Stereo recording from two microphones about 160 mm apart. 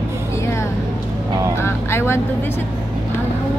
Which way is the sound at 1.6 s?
15° left (ahead or behind).